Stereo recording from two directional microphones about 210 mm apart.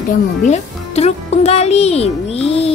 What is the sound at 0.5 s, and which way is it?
Speech, 30° left (ahead or behind).